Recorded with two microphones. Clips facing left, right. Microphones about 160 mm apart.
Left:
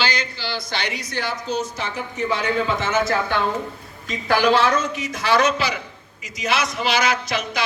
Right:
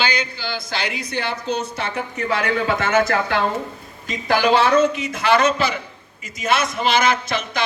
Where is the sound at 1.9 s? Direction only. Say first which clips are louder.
Right 1 dB; 65° right (ahead or behind).